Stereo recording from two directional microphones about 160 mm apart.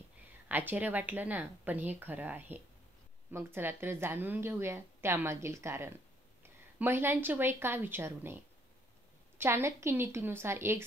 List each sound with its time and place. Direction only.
0.5 s a woman's voice: 10° right (ahead or behind)
9.4 s a woman's voice: 15° right (ahead or behind)